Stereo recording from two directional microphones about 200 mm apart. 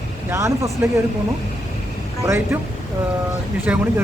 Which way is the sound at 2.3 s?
15° right (ahead or behind).